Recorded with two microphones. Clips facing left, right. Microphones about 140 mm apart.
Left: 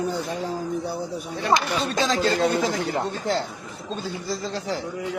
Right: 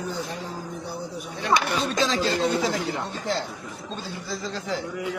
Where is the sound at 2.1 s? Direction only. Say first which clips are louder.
Left 2 dB; 45° left (ahead or behind).